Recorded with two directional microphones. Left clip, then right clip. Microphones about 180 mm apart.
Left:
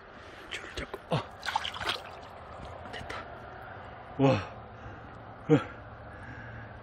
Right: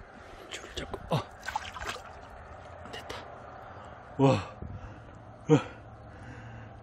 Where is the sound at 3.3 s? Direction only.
50° left (ahead or behind).